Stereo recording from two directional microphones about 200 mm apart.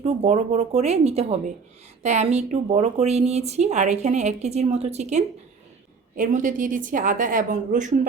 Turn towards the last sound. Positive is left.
turn(degrees=-40)  # may be behind; listen again after turning